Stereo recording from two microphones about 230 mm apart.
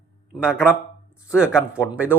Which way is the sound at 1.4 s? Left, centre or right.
Centre.